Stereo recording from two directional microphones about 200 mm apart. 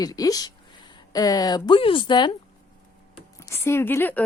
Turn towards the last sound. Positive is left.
turn(degrees=10)  # may be behind; listen again after turning